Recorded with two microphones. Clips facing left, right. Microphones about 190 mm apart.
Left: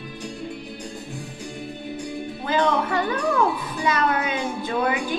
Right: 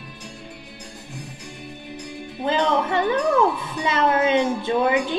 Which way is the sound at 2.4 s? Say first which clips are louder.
Right 1 dB; 25° right (ahead or behind).